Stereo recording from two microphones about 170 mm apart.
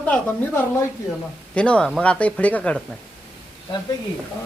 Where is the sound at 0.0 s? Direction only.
10° left (ahead or behind).